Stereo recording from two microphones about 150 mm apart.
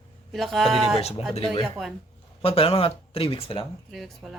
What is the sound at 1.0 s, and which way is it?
Speech, 40° left (ahead or behind).